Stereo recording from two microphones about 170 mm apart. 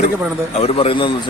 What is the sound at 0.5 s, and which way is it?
Speech, 35° left (ahead or behind).